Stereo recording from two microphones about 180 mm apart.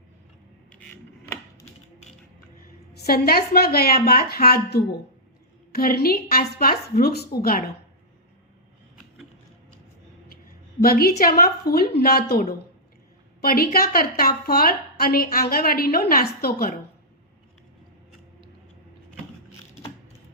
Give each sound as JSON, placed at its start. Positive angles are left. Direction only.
{"t": 2.9, "sound": "a woman's voice", "side_deg": 55}
{"t": 10.8, "sound": "a woman's voice", "side_deg": 55}